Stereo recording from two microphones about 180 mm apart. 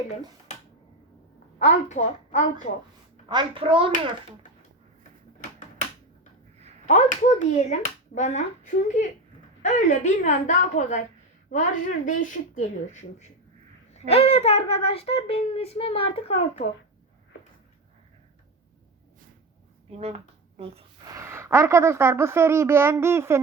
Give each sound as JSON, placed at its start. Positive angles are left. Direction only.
{"t": 1.5, "sound": "speech", "side_deg": 40}
{"t": 3.2, "sound": "a child's voice", "side_deg": -25}
{"t": 6.8, "sound": "speech", "side_deg": 40}
{"t": 9.6, "sound": "a woman's voice", "side_deg": 40}
{"t": 19.9, "sound": "speech", "side_deg": -35}
{"t": 21.0, "sound": "a woman's voice", "side_deg": -20}